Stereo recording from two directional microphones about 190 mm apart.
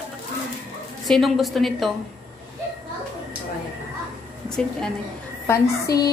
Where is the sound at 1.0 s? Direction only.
Centre (ahead or behind).